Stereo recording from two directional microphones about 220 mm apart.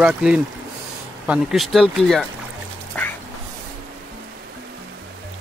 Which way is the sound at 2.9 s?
5° left (ahead or behind).